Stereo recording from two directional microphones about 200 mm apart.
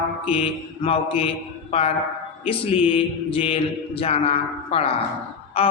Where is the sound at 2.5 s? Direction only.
30° left (ahead or behind).